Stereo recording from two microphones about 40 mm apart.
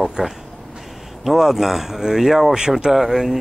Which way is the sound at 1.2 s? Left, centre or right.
Centre.